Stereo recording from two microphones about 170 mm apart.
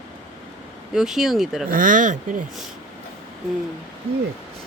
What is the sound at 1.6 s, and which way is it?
Speech, 55° right (ahead or behind).